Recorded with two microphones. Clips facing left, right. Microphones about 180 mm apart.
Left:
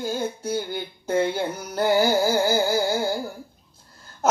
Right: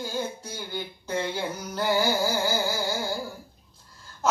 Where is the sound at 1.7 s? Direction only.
45° left (ahead or behind).